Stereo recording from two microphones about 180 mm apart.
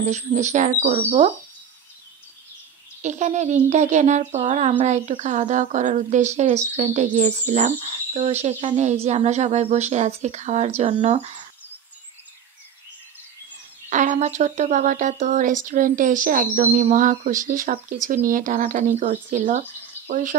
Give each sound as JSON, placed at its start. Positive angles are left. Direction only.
{"t": 0.0, "sound": "speech", "side_deg": -40}
{"t": 3.0, "sound": "speech", "side_deg": -40}
{"t": 13.8, "sound": "speech", "side_deg": -45}